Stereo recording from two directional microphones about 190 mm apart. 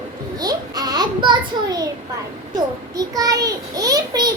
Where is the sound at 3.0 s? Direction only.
20° right (ahead or behind).